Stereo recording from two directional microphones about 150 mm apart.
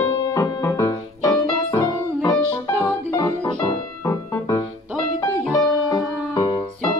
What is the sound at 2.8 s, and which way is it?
Music, 20° left (ahead or behind).